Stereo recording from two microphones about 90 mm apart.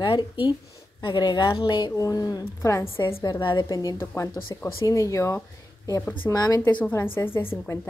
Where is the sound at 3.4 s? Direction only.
60° left (ahead or behind).